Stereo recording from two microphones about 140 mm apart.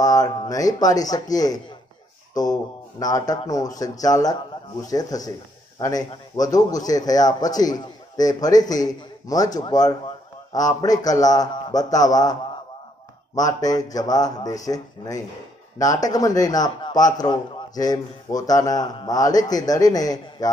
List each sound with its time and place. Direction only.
0.0 s a man's voice: 25° left (ahead or behind)